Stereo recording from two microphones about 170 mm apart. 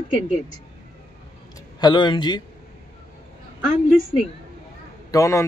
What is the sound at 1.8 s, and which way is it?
Speech, 25° left (ahead or behind).